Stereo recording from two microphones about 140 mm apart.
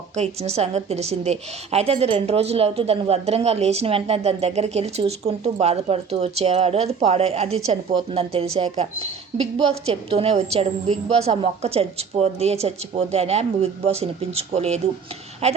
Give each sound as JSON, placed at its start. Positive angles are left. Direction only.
{"t": 0.2, "sound": "a woman's voice", "side_deg": -50}